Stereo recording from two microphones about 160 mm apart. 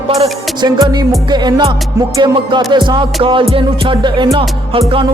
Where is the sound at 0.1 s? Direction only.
40° right (ahead or behind).